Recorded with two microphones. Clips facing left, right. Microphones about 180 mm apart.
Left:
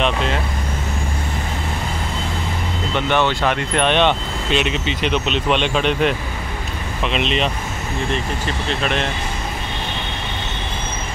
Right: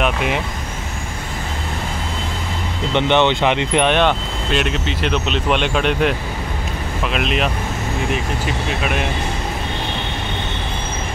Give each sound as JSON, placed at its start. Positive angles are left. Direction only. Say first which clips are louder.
{"t": 0.0, "sound": "vehicle", "louder": "right 1 dB", "side_deg": -10}
{"t": 2.9, "sound": "speech", "louder": "right 3 dB", "side_deg": -20}